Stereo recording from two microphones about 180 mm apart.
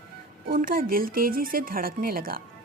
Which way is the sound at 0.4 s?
55° right (ahead or behind).